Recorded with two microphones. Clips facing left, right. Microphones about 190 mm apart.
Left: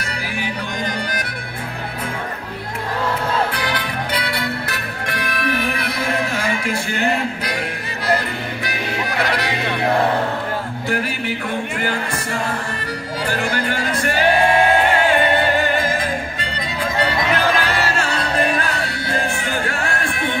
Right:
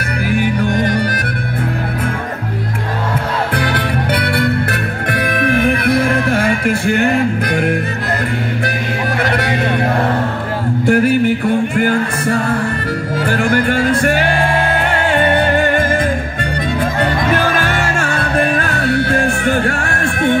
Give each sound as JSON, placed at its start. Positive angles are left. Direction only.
{"t": 0.3, "sound": "music", "side_deg": -55}
{"t": 3.5, "sound": "music", "side_deg": -55}
{"t": 10.9, "sound": "music", "side_deg": -50}
{"t": 13.3, "sound": "music", "side_deg": -55}
{"t": 15.6, "sound": "music", "side_deg": -55}
{"t": 17.6, "sound": "music", "side_deg": -50}